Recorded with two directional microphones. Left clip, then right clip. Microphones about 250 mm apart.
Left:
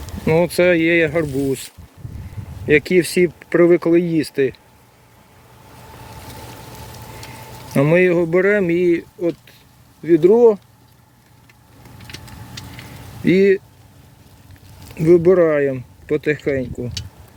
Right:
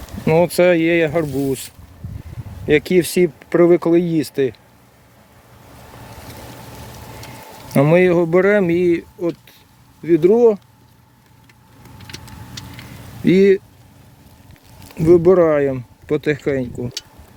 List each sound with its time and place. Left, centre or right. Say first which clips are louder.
0.3 s speech: right 1 dB; centre
2.9 s speech: even; centre
4.2 s speech: left 1 dB; right
7.7 s speech: right 1 dB; centre
11.9 s vehicle: right 1 dB; right
13.2 s speech: right 1 dB; centre
14.9 s speech: right 1 dB; centre